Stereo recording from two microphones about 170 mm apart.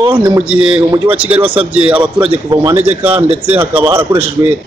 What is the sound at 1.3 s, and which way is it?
Speech, 10° right (ahead or behind).